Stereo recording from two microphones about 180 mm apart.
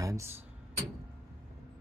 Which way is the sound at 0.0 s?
15° right (ahead or behind).